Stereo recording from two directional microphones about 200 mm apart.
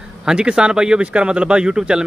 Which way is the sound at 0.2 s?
5° right (ahead or behind).